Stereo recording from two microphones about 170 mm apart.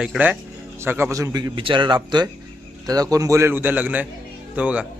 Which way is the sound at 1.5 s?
30° right (ahead or behind).